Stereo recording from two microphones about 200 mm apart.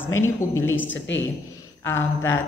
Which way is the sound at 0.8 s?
65° left (ahead or behind).